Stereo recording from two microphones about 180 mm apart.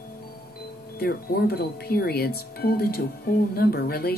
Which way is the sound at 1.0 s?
60° left (ahead or behind).